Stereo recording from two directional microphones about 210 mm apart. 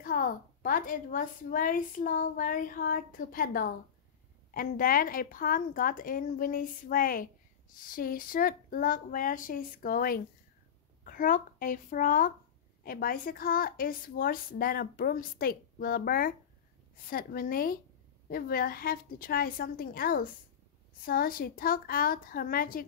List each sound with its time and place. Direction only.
0.0 s a woman's voice: 40° left (ahead or behind)